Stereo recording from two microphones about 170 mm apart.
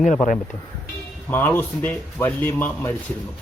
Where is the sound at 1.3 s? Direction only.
10° left (ahead or behind).